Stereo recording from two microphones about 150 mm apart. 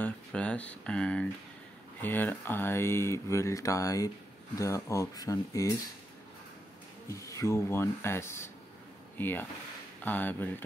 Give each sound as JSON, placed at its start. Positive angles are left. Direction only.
{"t": 0.0, "sound": "speech", "side_deg": 10}
{"t": 7.1, "sound": "speech", "side_deg": 20}